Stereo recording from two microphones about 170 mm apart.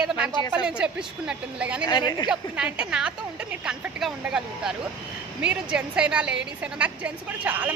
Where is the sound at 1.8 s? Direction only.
25° left (ahead or behind).